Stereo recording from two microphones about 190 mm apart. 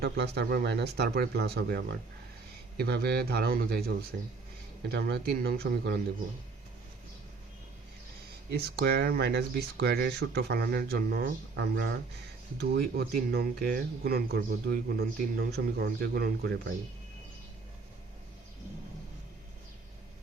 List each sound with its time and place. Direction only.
0.0 s speech: 60° right (ahead or behind)
8.5 s speech: 55° right (ahead or behind)